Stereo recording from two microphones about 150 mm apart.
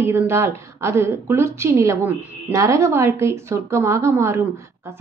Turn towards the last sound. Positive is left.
turn(degrees=-20)  # may be behind; listen again after turning